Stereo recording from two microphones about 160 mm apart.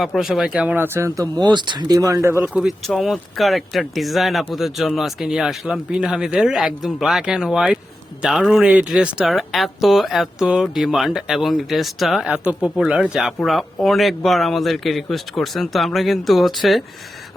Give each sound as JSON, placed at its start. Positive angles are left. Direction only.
{"t": 0.0, "sound": "speech", "side_deg": 0}
{"t": 2.4, "sound": "speech", "side_deg": -5}